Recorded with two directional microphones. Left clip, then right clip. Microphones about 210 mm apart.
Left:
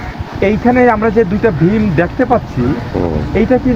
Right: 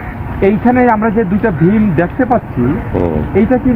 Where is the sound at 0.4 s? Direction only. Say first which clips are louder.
Even; 50° left (ahead or behind).